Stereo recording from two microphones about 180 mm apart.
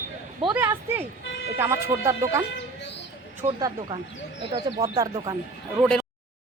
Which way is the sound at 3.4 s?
40° right (ahead or behind).